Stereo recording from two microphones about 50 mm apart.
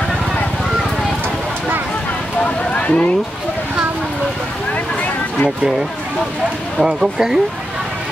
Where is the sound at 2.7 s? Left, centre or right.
Left.